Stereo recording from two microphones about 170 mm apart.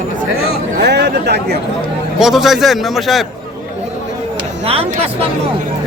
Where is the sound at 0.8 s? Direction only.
80° right.